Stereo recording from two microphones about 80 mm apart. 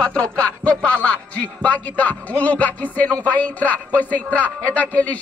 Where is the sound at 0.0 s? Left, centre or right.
Centre.